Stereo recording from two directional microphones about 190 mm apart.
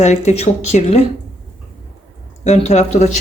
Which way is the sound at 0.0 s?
35° left (ahead or behind).